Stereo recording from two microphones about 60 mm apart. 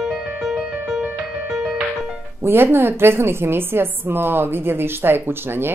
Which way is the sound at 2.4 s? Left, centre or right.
Right.